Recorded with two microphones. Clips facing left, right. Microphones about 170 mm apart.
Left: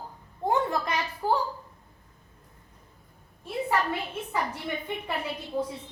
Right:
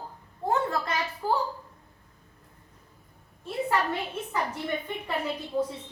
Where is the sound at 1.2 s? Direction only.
20° left (ahead or behind).